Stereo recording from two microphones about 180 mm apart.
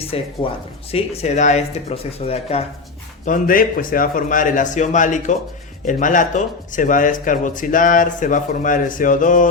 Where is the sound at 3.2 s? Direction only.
50° left (ahead or behind).